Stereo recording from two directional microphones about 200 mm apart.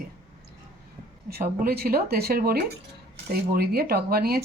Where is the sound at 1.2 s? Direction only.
50° right (ahead or behind).